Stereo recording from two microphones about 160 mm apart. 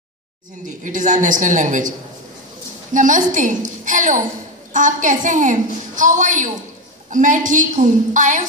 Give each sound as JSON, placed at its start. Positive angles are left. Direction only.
{"t": 0.8, "sound": "a woman's voice", "side_deg": -50}